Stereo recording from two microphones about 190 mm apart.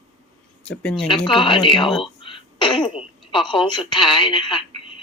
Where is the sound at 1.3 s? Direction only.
25° left (ahead or behind).